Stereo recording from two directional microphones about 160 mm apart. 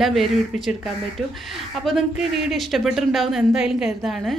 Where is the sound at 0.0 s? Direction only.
Centre (ahead or behind).